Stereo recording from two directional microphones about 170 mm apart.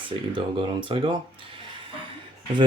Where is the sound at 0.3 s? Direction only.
30° right (ahead or behind).